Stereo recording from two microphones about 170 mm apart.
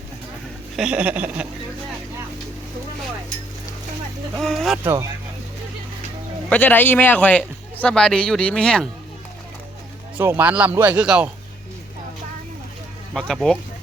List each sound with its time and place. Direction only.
0.8 s speech: 5° right (ahead or behind)
4.4 s speech: centre (ahead or behind)
4.8 s speech: 15° right (ahead or behind)
6.5 s a man's voice: 10° left (ahead or behind)
10.2 s speech: 15° right (ahead or behind)
13.1 s speech: 5° left (ahead or behind)